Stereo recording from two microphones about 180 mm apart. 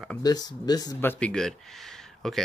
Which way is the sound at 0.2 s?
20° left (ahead or behind).